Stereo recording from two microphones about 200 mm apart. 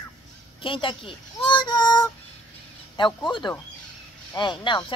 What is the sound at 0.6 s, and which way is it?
Speech, 25° left (ahead or behind).